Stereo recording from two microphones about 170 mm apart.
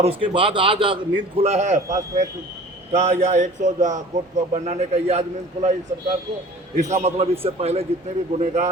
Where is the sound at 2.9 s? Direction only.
40° right (ahead or behind).